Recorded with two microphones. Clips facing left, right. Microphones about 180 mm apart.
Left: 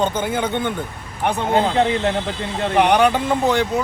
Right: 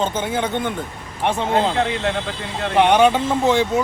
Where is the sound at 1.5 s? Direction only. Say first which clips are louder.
Left 4 dB; 35° left (ahead or behind).